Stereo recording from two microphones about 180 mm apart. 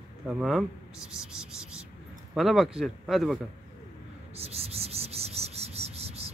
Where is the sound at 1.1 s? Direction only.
5° right (ahead or behind).